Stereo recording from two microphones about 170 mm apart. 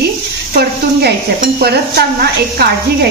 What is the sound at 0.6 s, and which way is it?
Stir, 65° right (ahead or behind).